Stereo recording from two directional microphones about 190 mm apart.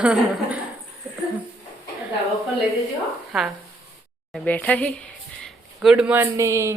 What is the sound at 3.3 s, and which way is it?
Speech, centre (ahead or behind).